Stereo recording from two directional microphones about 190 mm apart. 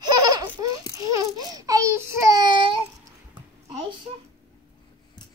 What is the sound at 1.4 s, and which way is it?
Speech, 20° right (ahead or behind).